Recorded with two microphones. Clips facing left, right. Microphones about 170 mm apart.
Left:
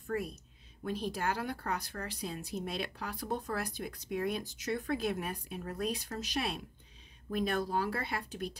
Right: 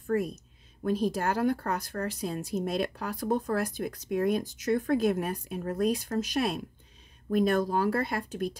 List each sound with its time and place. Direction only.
0.0 s speech: 45° right (ahead or behind)